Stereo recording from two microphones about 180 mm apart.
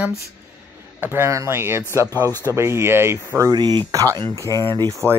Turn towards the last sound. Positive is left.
turn(degrees=-25)  # may be behind; listen again after turning